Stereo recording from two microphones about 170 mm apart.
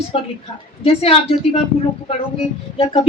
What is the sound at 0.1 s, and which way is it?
A woman's voice, 35° left (ahead or behind).